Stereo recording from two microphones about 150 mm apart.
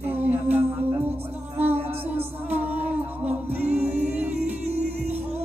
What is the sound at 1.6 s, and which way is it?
Music, 40° right (ahead or behind).